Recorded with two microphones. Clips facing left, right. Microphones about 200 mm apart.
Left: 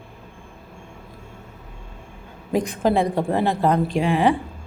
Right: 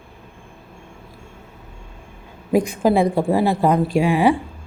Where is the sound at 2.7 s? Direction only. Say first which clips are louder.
Even; 10° right (ahead or behind).